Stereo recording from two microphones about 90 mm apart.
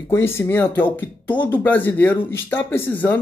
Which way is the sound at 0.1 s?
30° left (ahead or behind).